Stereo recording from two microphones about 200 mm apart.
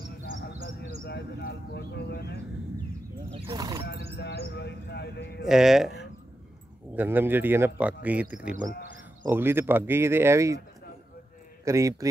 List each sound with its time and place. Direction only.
1.0 s a sound: 55° left (ahead or behind)
3.3 s speech: 20° right (ahead or behind)
3.8 s a sound: 55° left (ahead or behind)
4.2 s a man's voice: 55° left (ahead or behind)
5.5 s speech: centre (ahead or behind)
7.0 s speech: 10° right (ahead or behind)
11.6 s speech: 15° right (ahead or behind)